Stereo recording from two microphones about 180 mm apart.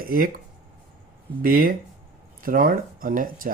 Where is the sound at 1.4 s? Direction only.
50° right (ahead or behind).